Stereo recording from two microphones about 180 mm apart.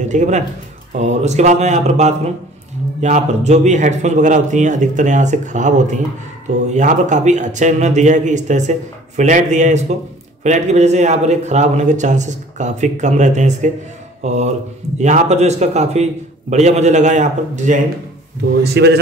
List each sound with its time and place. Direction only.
0.1 s a man's voice: 40° right (ahead or behind)
18.6 s speech: 70° right (ahead or behind)